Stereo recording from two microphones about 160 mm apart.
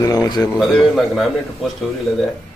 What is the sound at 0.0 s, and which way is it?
Speech, 25° left (ahead or behind).